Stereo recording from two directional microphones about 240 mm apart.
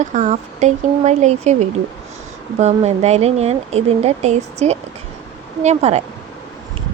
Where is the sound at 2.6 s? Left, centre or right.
Right.